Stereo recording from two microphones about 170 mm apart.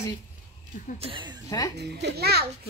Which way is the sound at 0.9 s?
30° right (ahead or behind).